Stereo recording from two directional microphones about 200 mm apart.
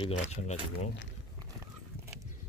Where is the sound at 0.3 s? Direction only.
35° left (ahead or behind).